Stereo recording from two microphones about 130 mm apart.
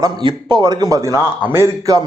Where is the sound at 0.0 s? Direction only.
35° right (ahead or behind).